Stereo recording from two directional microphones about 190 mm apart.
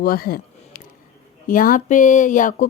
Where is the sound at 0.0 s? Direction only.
50° left (ahead or behind).